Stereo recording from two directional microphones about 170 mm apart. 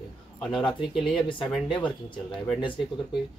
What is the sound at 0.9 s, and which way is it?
Speech, centre (ahead or behind).